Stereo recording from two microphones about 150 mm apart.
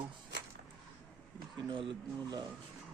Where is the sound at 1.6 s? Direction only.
35° right (ahead or behind).